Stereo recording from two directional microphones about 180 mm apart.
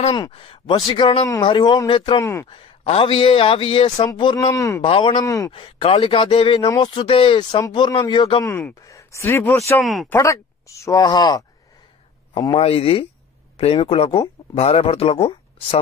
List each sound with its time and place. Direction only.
0.1 s a man's voice: 25° left (ahead or behind)
4.8 s a man's voice: 30° left (ahead or behind)
5.5 s a man's voice: 30° left (ahead or behind)
8.5 s speech: 10° left (ahead or behind)
9.8 s speech: centre (ahead or behind)
10.0 s a man's voice: 15° left (ahead or behind); by 15.8 s 35° left (ahead or behind)